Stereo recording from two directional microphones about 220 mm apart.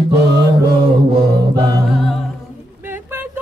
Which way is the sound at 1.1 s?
15° right (ahead or behind).